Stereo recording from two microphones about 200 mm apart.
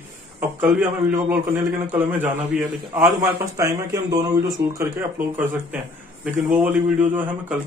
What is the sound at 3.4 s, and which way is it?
A man's voice, 15° right (ahead or behind).